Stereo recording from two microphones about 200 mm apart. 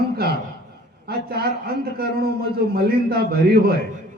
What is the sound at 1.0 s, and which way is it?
A man's voice, 50° right (ahead or behind).